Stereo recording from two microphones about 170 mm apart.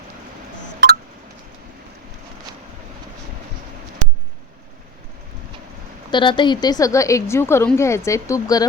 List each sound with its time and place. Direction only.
6.1 s a woman's voice: 30° left (ahead or behind)